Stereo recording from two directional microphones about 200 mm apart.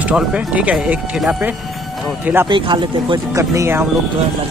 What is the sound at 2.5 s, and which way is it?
Speech, 25° right (ahead or behind).